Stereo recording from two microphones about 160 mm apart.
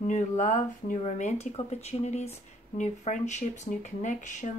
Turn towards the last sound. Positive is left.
turn(degrees=50)  # may be behind; listen again after turning